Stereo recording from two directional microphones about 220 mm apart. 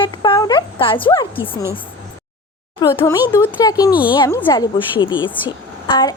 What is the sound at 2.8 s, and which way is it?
A woman's voice, 15° left (ahead or behind).